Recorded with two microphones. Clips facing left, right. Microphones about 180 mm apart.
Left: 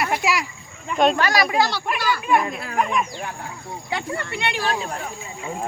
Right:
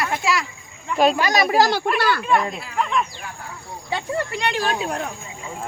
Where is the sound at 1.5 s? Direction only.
45° right (ahead or behind); by 2.2 s 65° right (ahead or behind).